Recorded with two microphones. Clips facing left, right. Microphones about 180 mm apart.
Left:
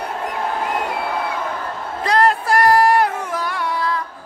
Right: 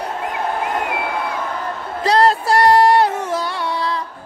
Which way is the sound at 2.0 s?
30° right (ahead or behind).